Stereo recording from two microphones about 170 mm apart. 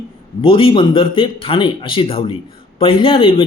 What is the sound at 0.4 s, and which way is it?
A man's voice, 30° left (ahead or behind).